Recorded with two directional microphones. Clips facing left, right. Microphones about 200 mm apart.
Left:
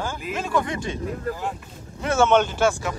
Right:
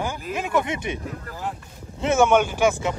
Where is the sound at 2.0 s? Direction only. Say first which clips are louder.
Right 1 dB; 15° right (ahead or behind).